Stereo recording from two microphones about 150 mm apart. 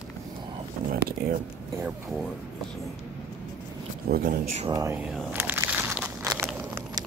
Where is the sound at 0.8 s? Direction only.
70° right (ahead or behind).